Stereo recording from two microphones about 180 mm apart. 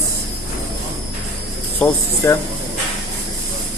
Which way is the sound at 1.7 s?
10° left (ahead or behind).